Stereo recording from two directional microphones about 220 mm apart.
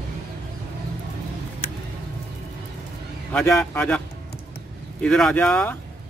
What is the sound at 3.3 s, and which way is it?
Speech, 5° left (ahead or behind).